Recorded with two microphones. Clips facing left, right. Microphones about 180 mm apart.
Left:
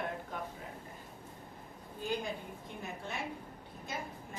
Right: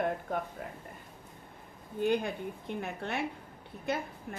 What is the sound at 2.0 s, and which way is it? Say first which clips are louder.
A woman's voice: right 8 dB; 60° right (ahead or behind).